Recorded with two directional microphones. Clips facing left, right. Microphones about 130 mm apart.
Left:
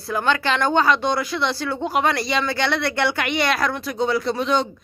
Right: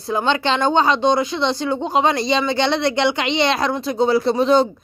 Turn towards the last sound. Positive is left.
turn(degrees=-35)  # may be behind; listen again after turning